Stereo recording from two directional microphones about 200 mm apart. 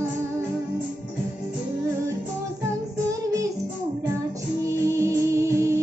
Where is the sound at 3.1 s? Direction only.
15° right (ahead or behind).